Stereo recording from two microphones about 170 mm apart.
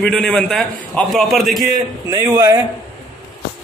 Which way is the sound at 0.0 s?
5° left (ahead or behind).